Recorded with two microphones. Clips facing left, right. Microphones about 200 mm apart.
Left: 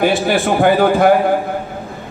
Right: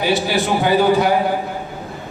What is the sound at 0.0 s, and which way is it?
A man's voice, 50° left (ahead or behind).